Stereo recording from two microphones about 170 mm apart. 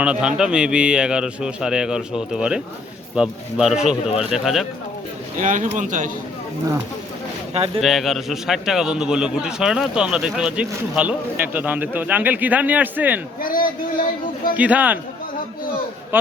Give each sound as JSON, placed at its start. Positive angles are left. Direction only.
{"t": 0.0, "sound": "a man's voice", "side_deg": -5}
{"t": 5.4, "sound": "speech", "side_deg": -50}
{"t": 7.8, "sound": "a man's voice", "side_deg": 0}
{"t": 13.4, "sound": "a man's voice", "side_deg": 55}
{"t": 14.5, "sound": "a man's voice", "side_deg": -10}